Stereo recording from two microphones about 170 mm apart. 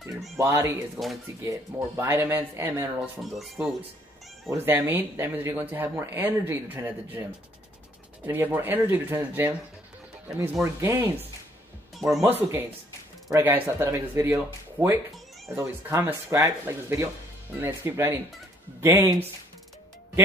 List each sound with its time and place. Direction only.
0.4 s speech: 15° right (ahead or behind)
0.9 s speech: centre (ahead or behind)
1.4 s speech: 15° right (ahead or behind)
3.2 s speech: centre (ahead or behind)
4.5 s speech: 10° right (ahead or behind)
12.2 s speech: 15° right (ahead or behind)